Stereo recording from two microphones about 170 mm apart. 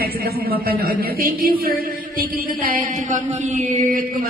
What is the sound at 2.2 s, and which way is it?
Mantra, 55° right (ahead or behind).